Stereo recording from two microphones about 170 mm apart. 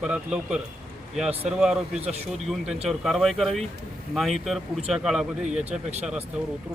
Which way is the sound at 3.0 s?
Centre (ahead or behind).